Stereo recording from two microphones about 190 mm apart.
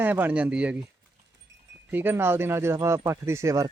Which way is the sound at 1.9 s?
10° right (ahead or behind).